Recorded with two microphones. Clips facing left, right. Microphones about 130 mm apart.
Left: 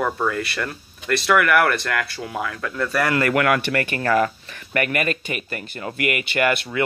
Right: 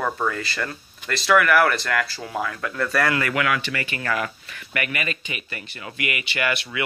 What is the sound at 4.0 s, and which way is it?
Speech, 40° left (ahead or behind).